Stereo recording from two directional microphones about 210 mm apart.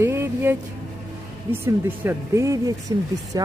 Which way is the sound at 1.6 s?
10° right (ahead or behind).